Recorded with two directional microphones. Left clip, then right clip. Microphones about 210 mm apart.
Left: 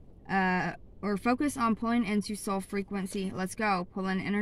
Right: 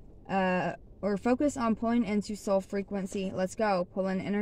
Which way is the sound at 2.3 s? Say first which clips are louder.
Right 4 dB; 20° left (ahead or behind).